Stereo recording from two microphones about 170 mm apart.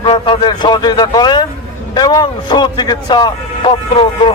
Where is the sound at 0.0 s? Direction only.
30° left (ahead or behind).